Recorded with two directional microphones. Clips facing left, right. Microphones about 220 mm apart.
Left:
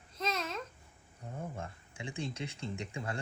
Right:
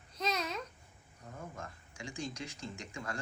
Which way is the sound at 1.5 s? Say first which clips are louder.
Left 3 dB; 30° left (ahead or behind).